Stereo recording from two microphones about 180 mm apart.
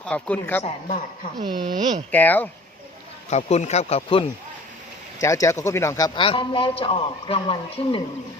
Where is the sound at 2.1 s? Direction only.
10° left (ahead or behind).